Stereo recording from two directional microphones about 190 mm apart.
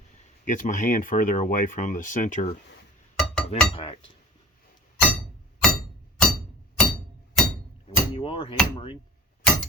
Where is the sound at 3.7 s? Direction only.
30° left (ahead or behind).